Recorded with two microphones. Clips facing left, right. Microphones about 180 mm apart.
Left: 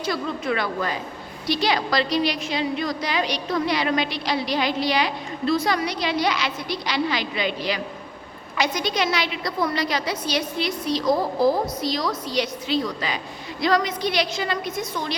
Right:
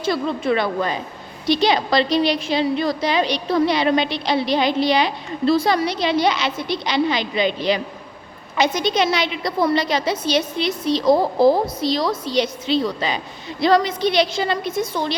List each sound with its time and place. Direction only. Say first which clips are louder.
0.0 s a woman's voice: right 5 dB; 25° right (ahead or behind)